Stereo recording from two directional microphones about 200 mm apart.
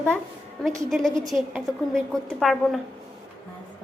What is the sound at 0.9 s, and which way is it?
A woman's voice, centre (ahead or behind).